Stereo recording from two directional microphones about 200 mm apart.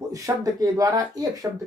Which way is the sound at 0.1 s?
15° right (ahead or behind).